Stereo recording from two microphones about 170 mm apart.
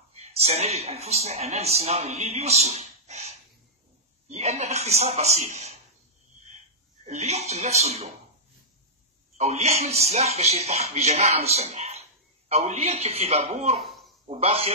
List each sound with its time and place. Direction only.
0.1 s a woman's voice: 35° right (ahead or behind)
7.1 s speech: 40° right (ahead or behind)
9.4 s speech: 40° right (ahead or behind)
13.8 s a sound: centre (ahead or behind)
14.2 s speech: 35° right (ahead or behind)